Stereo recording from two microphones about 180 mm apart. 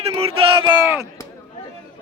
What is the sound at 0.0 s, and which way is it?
Speech, 35° right (ahead or behind).